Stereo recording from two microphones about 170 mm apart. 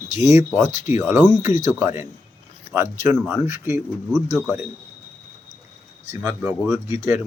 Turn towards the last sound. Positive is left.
turn(degrees=-15)  # may be behind; listen again after turning